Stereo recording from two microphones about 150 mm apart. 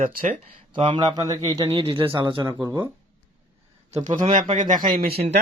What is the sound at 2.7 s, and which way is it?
Speech, 15° right (ahead or behind).